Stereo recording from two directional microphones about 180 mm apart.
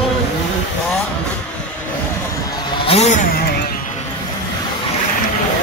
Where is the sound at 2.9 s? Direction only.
40° left (ahead or behind).